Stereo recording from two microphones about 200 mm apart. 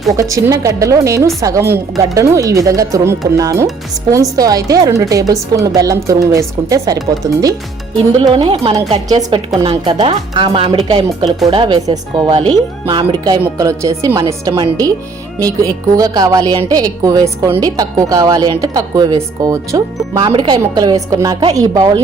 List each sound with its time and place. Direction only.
0.2 s a woman's voice: 15° right (ahead or behind)